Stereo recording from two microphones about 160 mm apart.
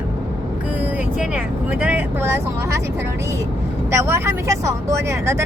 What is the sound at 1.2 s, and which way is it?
Speech, 10° right (ahead or behind).